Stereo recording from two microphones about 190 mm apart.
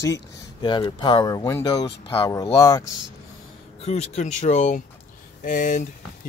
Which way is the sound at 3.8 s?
35° left (ahead or behind).